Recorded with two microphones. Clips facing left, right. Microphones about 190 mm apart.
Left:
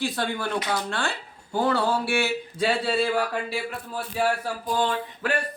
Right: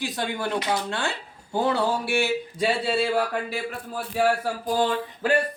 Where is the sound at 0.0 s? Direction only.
20° right (ahead or behind).